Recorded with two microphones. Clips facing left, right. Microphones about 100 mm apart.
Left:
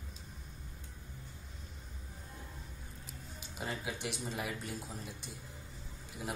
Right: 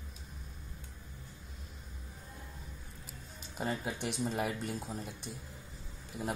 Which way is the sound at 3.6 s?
40° right (ahead or behind).